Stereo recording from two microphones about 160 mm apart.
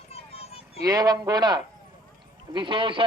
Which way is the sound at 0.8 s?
25° right (ahead or behind).